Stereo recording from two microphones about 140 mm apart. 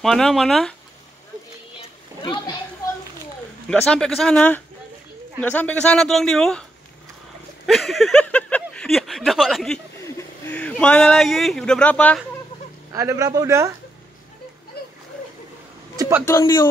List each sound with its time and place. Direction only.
0.0 s speech: centre (ahead or behind)
2.2 s speech: 35° left (ahead or behind)
3.6 s speech: 10° left (ahead or behind)
7.6 s speech: centre (ahead or behind)
10.1 s speech: 15° left (ahead or behind)
12.9 s a man's voice: 20° right (ahead or behind)
16.0 s a sound: 15° right (ahead or behind)
16.3 s speech: 25° left (ahead or behind)